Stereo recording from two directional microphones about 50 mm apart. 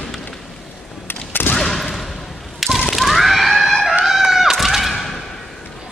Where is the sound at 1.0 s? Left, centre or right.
Left.